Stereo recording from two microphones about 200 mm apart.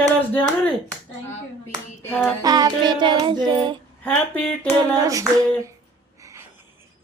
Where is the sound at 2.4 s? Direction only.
20° right (ahead or behind).